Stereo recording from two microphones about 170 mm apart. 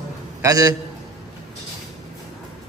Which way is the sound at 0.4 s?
20° right (ahead or behind).